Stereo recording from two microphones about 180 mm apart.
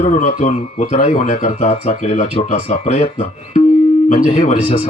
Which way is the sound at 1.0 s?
45° left (ahead or behind).